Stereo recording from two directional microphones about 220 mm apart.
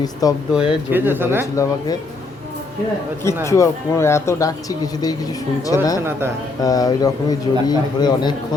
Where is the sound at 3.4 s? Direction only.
15° left (ahead or behind).